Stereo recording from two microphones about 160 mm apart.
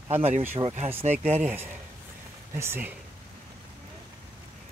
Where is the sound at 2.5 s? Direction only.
15° right (ahead or behind).